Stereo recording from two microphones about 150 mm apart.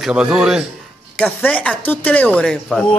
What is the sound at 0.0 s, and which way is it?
Speech, 5° right (ahead or behind).